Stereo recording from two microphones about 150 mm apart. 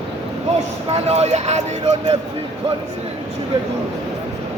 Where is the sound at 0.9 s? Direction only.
45° right (ahead or behind).